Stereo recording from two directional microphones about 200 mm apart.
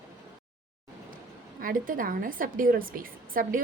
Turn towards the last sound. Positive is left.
turn(degrees=-45)  # may be behind; listen again after turning